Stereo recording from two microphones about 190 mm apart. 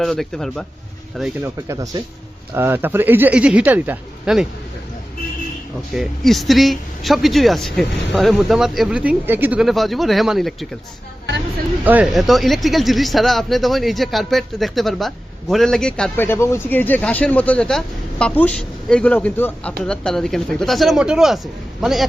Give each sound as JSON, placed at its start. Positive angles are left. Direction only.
{"t": 0.0, "sound": "speech", "side_deg": 0}
{"t": 1.6, "sound": "speech", "side_deg": -15}
{"t": 5.9, "sound": "speech", "side_deg": 0}
{"t": 11.9, "sound": "speech", "side_deg": -5}